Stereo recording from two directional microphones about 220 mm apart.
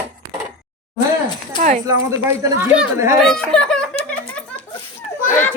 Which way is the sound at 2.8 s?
10° right (ahead or behind).